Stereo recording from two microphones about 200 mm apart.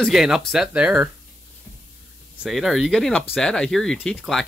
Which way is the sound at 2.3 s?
5° right (ahead or behind).